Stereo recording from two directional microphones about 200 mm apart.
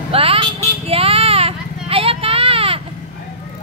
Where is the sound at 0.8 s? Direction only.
30° right (ahead or behind).